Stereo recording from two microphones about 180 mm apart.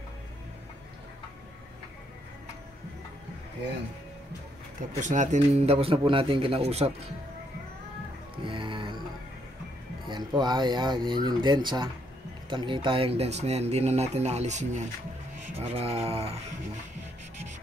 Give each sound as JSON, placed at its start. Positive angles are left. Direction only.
{"t": 5.0, "sound": "speech", "side_deg": -45}
{"t": 8.5, "sound": "music", "side_deg": -25}
{"t": 10.0, "sound": "speech", "side_deg": -25}